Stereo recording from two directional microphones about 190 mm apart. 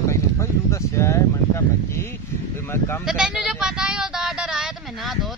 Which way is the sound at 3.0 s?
5° right (ahead or behind).